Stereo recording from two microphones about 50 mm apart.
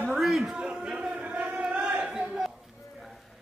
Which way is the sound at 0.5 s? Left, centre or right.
Centre.